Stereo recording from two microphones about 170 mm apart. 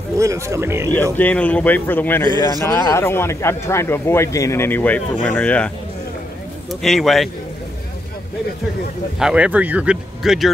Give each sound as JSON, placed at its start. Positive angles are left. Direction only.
{"t": 0.2, "sound": "speech", "side_deg": -20}
{"t": 1.1, "sound": "speech", "side_deg": 10}
{"t": 6.7, "sound": "speech", "side_deg": 0}
{"t": 9.2, "sound": "speech", "side_deg": -5}